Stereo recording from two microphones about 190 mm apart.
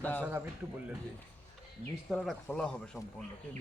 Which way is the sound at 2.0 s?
Centre (ahead or behind).